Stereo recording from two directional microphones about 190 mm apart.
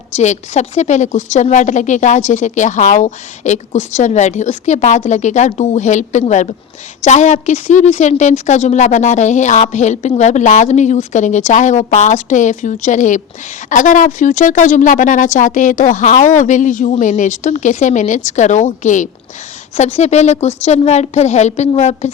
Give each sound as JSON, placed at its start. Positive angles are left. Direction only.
{"t": 0.2, "sound": "a woman's voice", "side_deg": 35}